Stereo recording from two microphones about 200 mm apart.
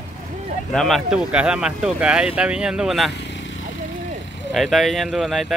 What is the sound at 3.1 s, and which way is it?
Vehicle, 60° left (ahead or behind).